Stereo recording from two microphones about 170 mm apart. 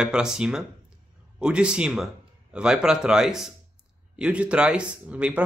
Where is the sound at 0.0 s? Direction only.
5° right (ahead or behind).